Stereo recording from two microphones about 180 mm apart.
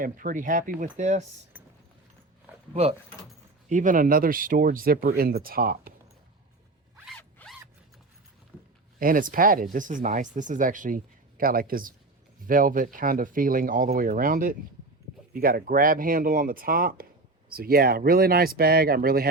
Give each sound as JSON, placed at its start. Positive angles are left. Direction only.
{"t": 0.0, "sound": "speech", "side_deg": -50}
{"t": 1.5, "sound": "clip-clop", "side_deg": -10}
{"t": 3.7, "sound": "speech", "side_deg": -45}
{"t": 6.9, "sound": "zipper", "side_deg": -5}
{"t": 7.2, "sound": "zipper", "side_deg": 10}
{"t": 9.0, "sound": "speech", "side_deg": -50}